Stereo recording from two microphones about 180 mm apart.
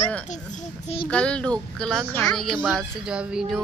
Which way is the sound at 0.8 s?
30° left (ahead or behind).